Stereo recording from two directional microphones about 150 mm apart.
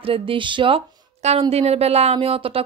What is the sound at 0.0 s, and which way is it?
Speech, 35° right (ahead or behind).